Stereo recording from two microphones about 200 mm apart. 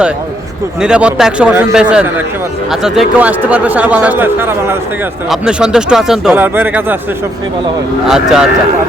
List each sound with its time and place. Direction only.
0.8 s speech: 5° right (ahead or behind)
8.0 s speech: 5° right (ahead or behind)